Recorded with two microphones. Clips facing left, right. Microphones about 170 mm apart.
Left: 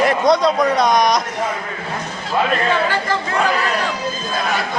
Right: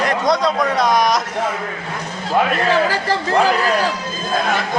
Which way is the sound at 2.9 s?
35° right (ahead or behind).